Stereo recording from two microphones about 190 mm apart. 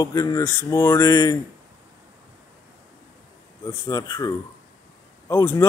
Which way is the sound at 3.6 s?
15° left (ahead or behind).